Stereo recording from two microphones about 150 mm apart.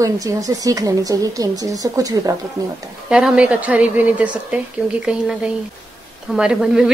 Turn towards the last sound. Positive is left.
turn(degrees=-5)  # may be behind; listen again after turning